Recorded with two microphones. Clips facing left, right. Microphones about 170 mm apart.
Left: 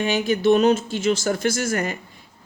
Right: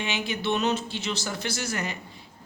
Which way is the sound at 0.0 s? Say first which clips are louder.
Left 10 dB; 45° left (ahead or behind).